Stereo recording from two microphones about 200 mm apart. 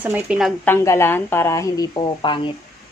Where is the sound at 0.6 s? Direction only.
15° left (ahead or behind).